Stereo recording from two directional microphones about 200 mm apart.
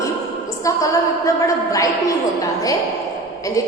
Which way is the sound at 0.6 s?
15° left (ahead or behind).